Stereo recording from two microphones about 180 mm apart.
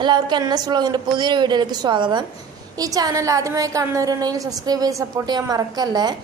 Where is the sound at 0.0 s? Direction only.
25° right (ahead or behind).